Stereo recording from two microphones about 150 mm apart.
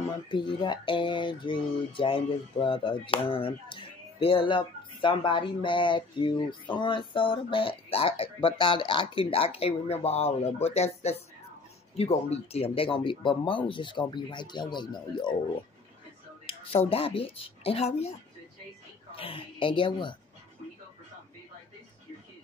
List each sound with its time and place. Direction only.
0.3 s speech: 35° left (ahead or behind)
16.4 s a sound: 40° left (ahead or behind)
16.9 s speech: 40° left (ahead or behind)
19.1 s speech: 35° left (ahead or behind)